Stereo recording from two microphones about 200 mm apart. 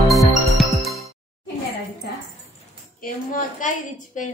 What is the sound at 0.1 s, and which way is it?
Music, centre (ahead or behind).